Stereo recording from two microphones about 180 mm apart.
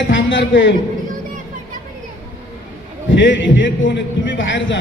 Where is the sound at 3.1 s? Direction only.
90° left.